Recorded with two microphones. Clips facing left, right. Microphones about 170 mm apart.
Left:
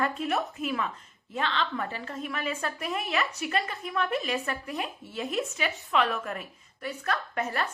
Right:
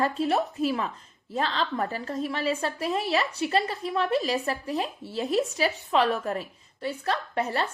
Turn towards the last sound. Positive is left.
turn(degrees=-30)  # may be behind; listen again after turning